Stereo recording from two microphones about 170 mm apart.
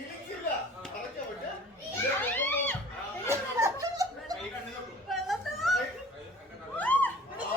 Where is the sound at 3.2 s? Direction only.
20° right (ahead or behind).